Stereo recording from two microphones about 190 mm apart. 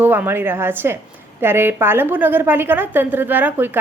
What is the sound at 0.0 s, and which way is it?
A woman's voice, 10° right (ahead or behind).